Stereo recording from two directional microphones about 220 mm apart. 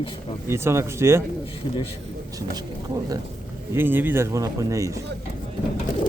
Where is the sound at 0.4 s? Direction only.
10° right (ahead or behind).